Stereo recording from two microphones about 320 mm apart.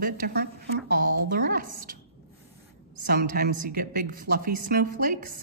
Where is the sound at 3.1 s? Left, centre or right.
Right.